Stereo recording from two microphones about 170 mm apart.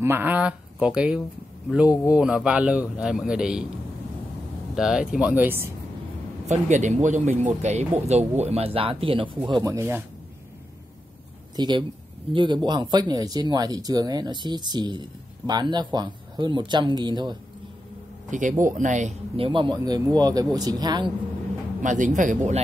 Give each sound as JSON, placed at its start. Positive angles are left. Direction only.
{"t": 0.0, "sound": "a man's voice", "side_deg": -10}
{"t": 4.7, "sound": "a man's voice", "side_deg": -5}
{"t": 6.5, "sound": "speech", "side_deg": -45}
{"t": 11.5, "sound": "speech", "side_deg": -25}
{"t": 18.3, "sound": "speech", "side_deg": -50}
{"t": 21.8, "sound": "speech", "side_deg": -45}